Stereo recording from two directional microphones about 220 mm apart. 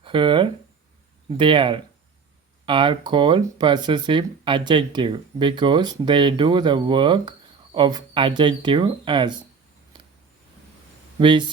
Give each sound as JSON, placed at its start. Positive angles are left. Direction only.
{"t": 0.0, "sound": "speech", "side_deg": -20}
{"t": 11.2, "sound": "speech", "side_deg": -20}